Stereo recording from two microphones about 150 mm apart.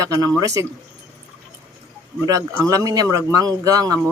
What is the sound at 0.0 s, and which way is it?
Speech, 25° right (ahead or behind).